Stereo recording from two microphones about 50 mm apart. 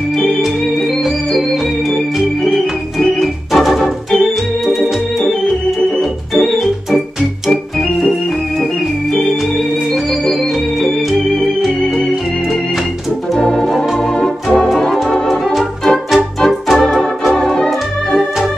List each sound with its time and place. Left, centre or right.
1.0 s organ: centre
5.2 s organ: centre
5.9 s organ: centre
13.4 s organ: centre
15.2 s music: centre
16.3 s organ: centre